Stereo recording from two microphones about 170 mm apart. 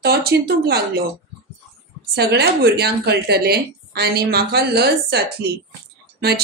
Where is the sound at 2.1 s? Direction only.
70° right (ahead or behind).